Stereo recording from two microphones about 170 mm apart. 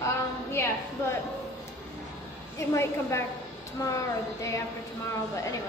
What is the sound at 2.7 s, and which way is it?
A woman's voice, 15° left (ahead or behind).